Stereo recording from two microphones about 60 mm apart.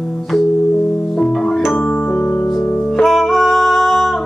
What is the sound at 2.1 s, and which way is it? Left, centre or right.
Music, left.